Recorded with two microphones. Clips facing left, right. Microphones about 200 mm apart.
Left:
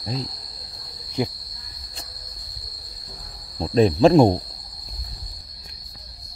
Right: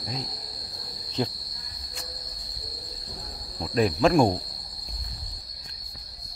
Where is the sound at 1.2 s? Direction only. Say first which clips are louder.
Left 3 dB; 10° left (ahead or behind).